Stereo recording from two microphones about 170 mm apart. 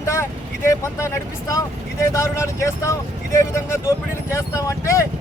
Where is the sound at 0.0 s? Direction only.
15° left (ahead or behind).